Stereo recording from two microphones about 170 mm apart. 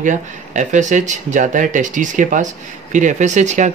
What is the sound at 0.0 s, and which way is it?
Speech, 50° right (ahead or behind).